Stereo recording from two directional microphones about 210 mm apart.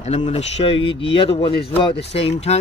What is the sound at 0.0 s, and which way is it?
A man's voice, 30° left (ahead or behind).